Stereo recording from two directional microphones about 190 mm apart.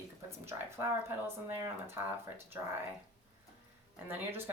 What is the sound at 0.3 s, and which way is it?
Speech, 15° right (ahead or behind).